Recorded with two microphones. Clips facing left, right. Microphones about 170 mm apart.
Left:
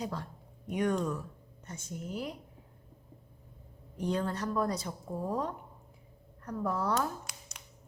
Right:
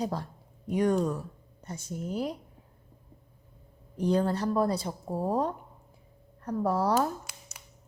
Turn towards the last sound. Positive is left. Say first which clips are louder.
# right 5 dB
turn(degrees=-35)  # may be behind; listen again after turning